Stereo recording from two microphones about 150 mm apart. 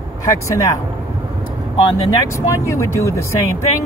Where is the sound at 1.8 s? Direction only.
30° left (ahead or behind).